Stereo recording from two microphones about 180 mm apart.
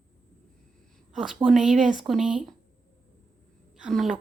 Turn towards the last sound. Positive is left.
turn(degrees=0)  # may be behind; listen again after turning